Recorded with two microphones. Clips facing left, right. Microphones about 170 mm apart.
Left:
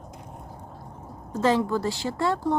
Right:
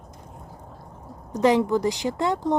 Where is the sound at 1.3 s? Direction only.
15° right (ahead or behind).